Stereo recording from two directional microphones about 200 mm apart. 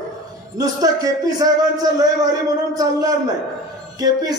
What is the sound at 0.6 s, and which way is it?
A man's voice, 20° right (ahead or behind).